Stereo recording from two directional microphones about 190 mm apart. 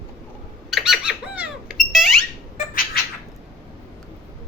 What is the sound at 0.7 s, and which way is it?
Squeak, centre (ahead or behind).